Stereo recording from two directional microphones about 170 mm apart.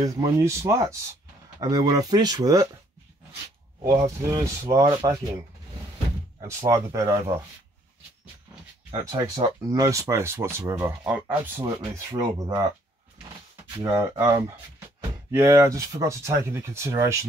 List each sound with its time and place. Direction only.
0.0 s speech: 20° right (ahead or behind)
3.8 s speech: 15° right (ahead or behind)
6.4 s speech: 15° right (ahead or behind)
9.0 s speech: 20° right (ahead or behind)
11.6 s speech: 20° right (ahead or behind)
13.9 s speech: 20° right (ahead or behind)
15.4 s speech: 20° right (ahead or behind)